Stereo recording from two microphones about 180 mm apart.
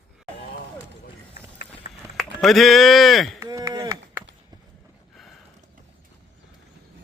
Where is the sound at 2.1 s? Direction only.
Centre (ahead or behind).